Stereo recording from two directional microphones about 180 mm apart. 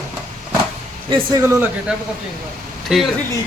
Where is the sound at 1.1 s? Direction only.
30° right (ahead or behind).